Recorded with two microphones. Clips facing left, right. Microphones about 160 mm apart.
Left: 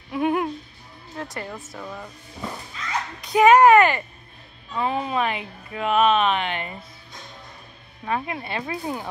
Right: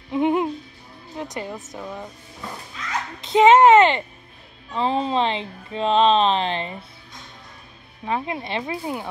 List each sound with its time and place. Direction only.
0.1 s music: 20° right (ahead or behind)
1.1 s speech: 20° right (ahead or behind)
3.2 s speech: 25° right (ahead or behind)
8.0 s speech: 15° right (ahead or behind)